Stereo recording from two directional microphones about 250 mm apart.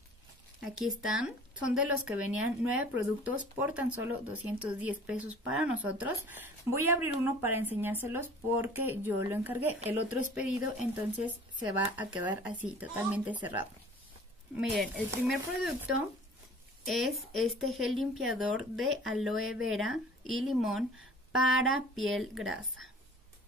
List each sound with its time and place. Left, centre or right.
0.6 s speech: centre
10.4 s speech: left
12.2 s speech: centre
16.8 s speech: centre